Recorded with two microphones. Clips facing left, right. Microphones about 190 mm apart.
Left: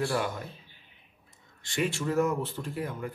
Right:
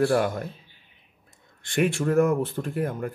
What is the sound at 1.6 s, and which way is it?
Speech, 55° right (ahead or behind).